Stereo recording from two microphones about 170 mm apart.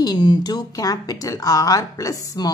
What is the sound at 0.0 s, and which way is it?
A woman's voice, 25° left (ahead or behind).